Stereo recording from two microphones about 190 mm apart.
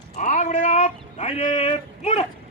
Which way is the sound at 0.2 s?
40° left (ahead or behind).